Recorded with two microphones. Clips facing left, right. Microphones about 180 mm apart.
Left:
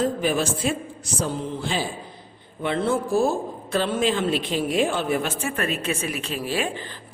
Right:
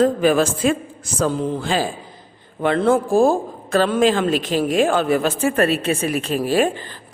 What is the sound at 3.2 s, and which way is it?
Speech, 90° right.